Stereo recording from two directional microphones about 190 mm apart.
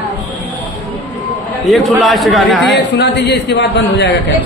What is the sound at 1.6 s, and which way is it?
A man's voice, centre (ahead or behind).